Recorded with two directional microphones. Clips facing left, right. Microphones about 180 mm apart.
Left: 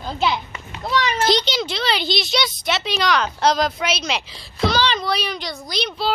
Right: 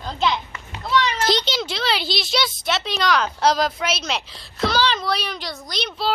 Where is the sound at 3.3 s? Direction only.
5° right (ahead or behind).